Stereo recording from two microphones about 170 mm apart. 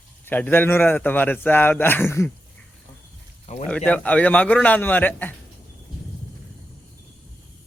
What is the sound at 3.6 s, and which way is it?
A man's voice, 10° left (ahead or behind).